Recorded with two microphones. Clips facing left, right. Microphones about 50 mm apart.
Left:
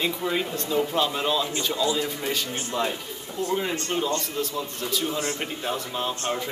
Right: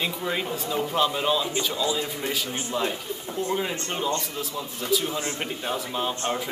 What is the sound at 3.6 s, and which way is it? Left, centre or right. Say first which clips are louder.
Speech: left 2 dB; centre.